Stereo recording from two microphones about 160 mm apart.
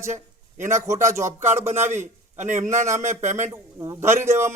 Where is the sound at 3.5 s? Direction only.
20° right (ahead or behind).